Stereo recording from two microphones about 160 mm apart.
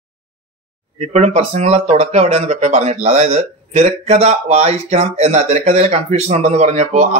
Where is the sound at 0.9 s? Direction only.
45° right (ahead or behind).